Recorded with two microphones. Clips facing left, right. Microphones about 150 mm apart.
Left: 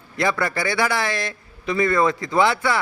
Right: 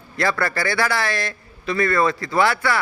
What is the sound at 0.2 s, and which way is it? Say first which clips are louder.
A man's voice: even; 20° left (ahead or behind).